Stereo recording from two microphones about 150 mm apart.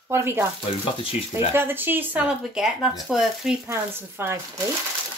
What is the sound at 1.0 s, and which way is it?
Speech, 40° left (ahead or behind).